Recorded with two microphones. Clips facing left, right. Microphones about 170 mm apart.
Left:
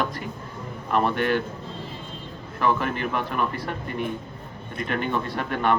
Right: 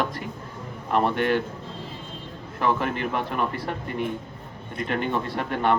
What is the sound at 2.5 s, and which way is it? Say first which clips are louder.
A man's voice: even; 25° right (ahead or behind).